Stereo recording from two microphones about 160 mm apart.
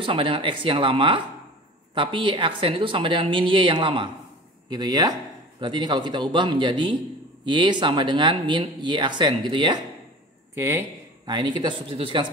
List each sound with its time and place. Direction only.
0.0 s a woman's voice: 35° right (ahead or behind)
10.5 s speech: 15° right (ahead or behind)